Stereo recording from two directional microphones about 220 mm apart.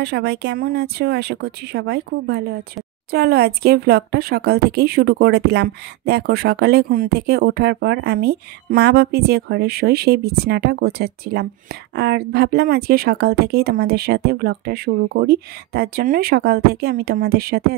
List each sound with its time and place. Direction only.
0.0 s speech: 50° right (ahead or behind)